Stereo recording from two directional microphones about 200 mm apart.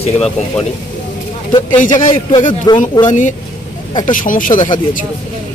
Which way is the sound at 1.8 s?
40° left (ahead or behind).